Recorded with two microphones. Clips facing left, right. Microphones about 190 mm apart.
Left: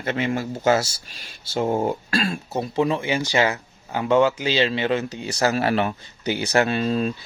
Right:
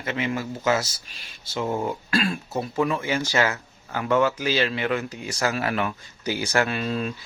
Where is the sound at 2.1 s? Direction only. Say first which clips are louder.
Even; 45° left (ahead or behind).